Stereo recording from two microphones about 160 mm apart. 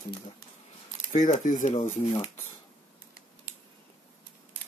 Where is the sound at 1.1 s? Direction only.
50° left (ahead or behind).